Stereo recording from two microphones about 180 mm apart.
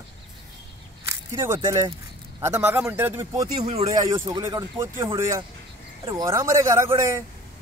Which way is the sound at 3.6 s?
35° right (ahead or behind).